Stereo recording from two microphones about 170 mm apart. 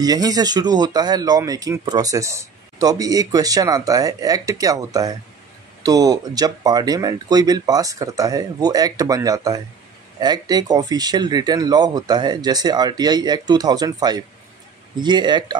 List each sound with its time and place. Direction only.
0.0 s speech: 20° right (ahead or behind)